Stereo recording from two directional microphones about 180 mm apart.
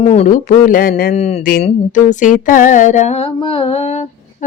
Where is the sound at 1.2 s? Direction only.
40° left (ahead or behind).